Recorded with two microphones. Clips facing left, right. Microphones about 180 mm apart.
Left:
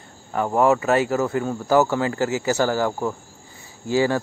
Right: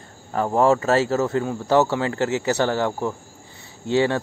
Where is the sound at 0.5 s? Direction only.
30° right (ahead or behind).